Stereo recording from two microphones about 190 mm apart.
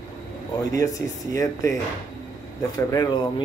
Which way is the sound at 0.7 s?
15° left (ahead or behind).